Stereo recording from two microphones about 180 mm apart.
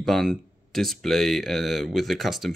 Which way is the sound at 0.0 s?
Centre (ahead or behind).